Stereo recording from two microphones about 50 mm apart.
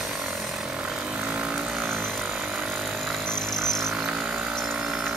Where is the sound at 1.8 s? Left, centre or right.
Right.